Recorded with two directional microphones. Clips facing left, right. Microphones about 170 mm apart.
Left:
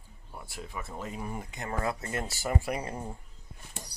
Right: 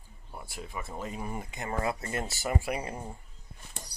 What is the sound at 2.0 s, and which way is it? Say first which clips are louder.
Speech: even; 25° right (ahead or behind).